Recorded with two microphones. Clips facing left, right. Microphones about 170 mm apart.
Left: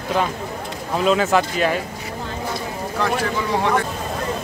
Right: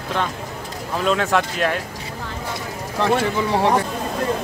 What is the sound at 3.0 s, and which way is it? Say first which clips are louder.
Speech: right 3 dB; 30° right (ahead or behind).